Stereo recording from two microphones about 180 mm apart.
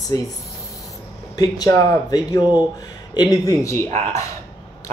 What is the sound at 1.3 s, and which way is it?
Speech, 20° left (ahead or behind).